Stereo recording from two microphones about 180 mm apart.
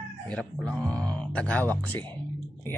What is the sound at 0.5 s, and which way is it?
Speech, 5° left (ahead or behind).